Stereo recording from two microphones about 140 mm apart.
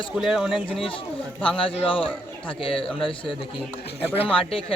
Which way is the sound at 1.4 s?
40° left (ahead or behind).